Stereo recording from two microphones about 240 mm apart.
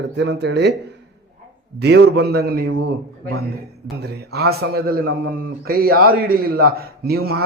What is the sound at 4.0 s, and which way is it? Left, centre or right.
A man's voice, right.